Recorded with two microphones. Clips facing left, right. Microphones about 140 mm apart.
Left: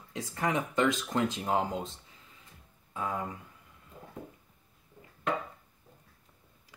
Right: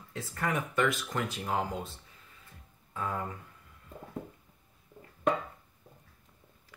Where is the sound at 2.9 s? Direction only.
20° left (ahead or behind).